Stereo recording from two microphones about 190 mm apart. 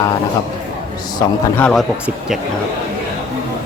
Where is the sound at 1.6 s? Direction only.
5° left (ahead or behind).